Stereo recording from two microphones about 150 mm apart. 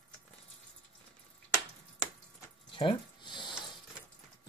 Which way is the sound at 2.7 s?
35° left (ahead or behind).